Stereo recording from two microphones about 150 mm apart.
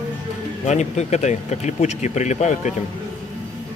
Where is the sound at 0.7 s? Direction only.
50° left (ahead or behind).